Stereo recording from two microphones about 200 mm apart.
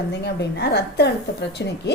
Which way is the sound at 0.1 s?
55° left (ahead or behind).